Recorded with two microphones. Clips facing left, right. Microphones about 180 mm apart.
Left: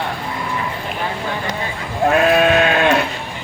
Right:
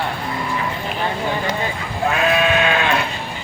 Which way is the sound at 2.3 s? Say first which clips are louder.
Left 4 dB; 45° left (ahead or behind).